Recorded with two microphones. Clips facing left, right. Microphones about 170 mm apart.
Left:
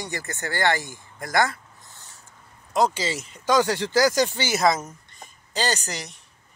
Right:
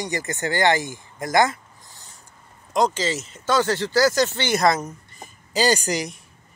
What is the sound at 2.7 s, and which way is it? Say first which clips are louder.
Speech: right 1 dB; 10° left (ahead or behind).